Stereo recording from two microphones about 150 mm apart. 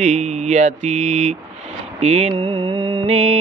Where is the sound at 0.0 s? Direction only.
50° right (ahead or behind).